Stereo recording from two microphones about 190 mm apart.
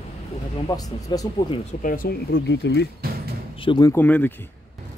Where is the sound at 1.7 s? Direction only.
45° left (ahead or behind).